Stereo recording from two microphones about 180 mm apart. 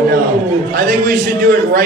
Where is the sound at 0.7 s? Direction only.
50° right (ahead or behind).